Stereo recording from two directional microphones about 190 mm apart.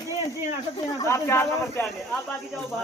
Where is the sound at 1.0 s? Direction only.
15° left (ahead or behind).